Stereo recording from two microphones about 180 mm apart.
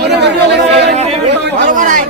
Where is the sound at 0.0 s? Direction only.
70° right (ahead or behind).